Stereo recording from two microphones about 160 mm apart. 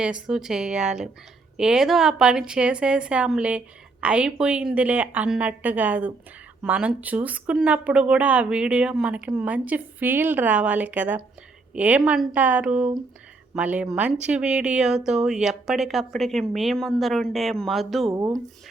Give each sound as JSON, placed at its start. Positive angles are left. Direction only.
{"t": 0.0, "sound": "speech", "side_deg": -5}
{"t": 18.1, "sound": "speech", "side_deg": -20}